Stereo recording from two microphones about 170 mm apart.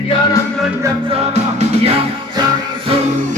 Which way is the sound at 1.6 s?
35° right (ahead or behind).